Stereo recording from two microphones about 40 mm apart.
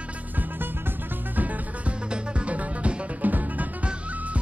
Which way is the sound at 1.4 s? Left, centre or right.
Right.